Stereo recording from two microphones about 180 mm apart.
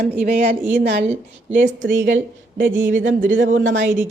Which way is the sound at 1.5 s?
90° right.